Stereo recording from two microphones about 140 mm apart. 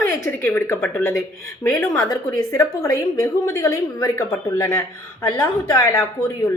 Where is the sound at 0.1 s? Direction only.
20° left (ahead or behind).